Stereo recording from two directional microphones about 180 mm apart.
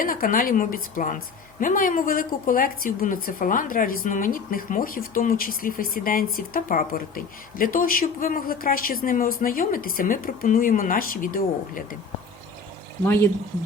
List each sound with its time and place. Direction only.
0.0 s a woman's voice: 50° left (ahead or behind)